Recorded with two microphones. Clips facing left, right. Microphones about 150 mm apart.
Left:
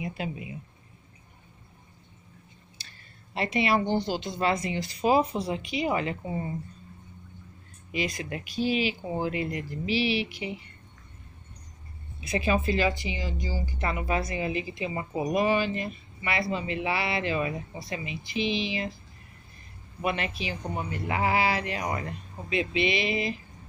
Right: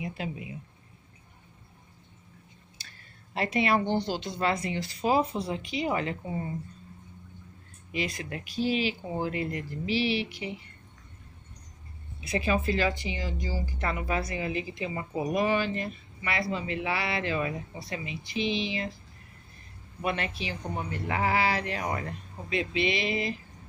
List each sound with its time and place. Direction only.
0.0 s speech: 15° left (ahead or behind)
3.5 s speech: 5° left (ahead or behind)
7.9 s speech: 15° left (ahead or behind)
12.2 s speech: 20° left (ahead or behind)
13.7 s speech: 15° left (ahead or behind)
20.0 s speech: 15° left (ahead or behind)